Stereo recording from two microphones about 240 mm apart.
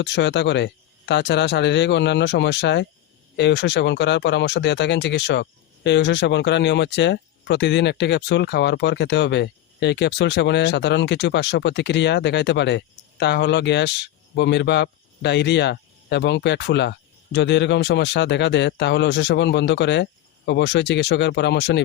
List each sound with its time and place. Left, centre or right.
0.0 s speech: left